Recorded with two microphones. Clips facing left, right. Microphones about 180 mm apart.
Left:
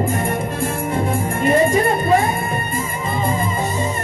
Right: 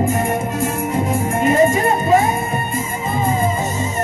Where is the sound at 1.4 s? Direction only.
45° right (ahead or behind).